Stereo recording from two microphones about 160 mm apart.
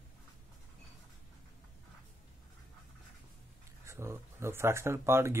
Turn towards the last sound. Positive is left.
turn(degrees=-15)  # may be behind; listen again after turning